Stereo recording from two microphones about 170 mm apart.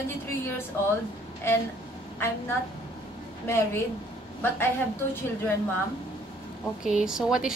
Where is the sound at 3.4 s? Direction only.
15° left (ahead or behind).